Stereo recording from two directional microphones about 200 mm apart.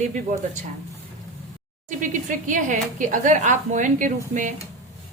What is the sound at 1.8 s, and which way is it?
A woman's voice, 40° right (ahead or behind).